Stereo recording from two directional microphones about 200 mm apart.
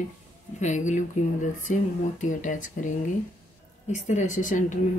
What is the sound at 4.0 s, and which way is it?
Speech, 40° left (ahead or behind).